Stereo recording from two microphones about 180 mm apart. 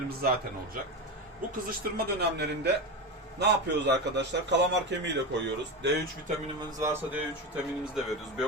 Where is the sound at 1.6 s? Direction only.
60° right (ahead or behind).